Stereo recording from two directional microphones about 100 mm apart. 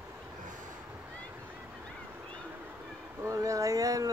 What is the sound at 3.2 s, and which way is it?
Speech, 35° right (ahead or behind).